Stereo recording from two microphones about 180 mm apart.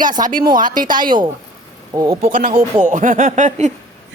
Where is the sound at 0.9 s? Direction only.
25° right (ahead or behind).